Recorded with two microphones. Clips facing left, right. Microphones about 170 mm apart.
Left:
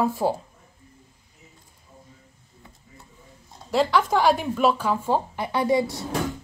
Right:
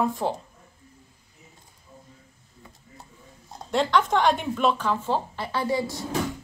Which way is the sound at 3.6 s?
5° left (ahead or behind).